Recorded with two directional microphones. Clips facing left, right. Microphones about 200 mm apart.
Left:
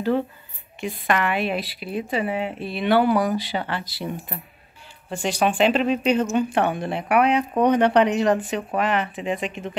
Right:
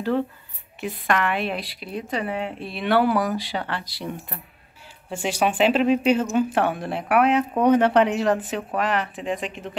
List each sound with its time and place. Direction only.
0.7 s speech: centre (ahead or behind)
5.1 s speech: 10° right (ahead or behind)